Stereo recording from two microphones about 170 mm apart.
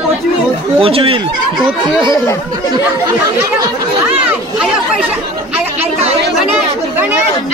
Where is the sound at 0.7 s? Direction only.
35° right (ahead or behind).